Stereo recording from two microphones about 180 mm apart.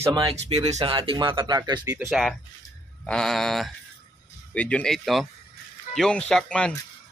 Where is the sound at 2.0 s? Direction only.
Centre (ahead or behind).